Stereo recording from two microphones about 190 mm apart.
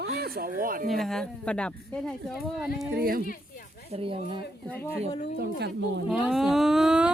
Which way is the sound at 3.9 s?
30° right (ahead or behind).